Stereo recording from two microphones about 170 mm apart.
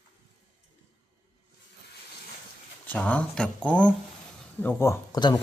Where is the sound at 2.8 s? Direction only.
10° left (ahead or behind).